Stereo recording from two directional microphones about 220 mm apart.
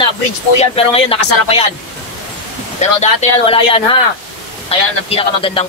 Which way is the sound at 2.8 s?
30° left (ahead or behind).